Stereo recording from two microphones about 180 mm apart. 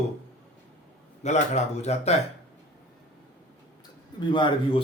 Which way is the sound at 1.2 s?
40° left (ahead or behind).